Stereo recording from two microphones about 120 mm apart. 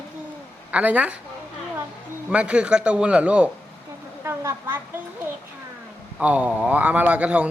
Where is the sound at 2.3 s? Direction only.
10° right (ahead or behind).